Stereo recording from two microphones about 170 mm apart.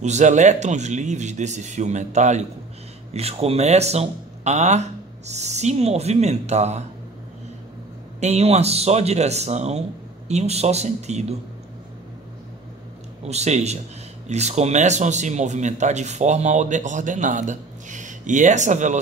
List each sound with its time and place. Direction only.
0.0 s speech: 45° right (ahead or behind)
8.2 s speech: 40° right (ahead or behind)
13.2 s speech: 40° right (ahead or behind)